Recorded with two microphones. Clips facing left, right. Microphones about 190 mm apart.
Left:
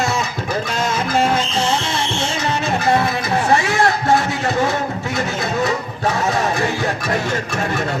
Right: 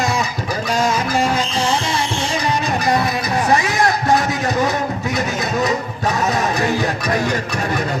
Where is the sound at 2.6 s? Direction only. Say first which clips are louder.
Left 4 dB; 15° right (ahead or behind).